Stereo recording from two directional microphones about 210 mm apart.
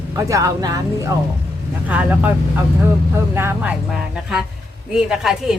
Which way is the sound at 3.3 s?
10° right (ahead or behind).